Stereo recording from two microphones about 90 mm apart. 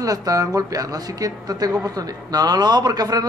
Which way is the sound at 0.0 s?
40° right (ahead or behind).